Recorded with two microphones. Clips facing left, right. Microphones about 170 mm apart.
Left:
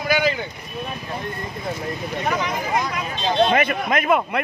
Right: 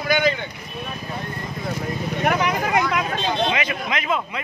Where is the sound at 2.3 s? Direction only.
65° right (ahead or behind).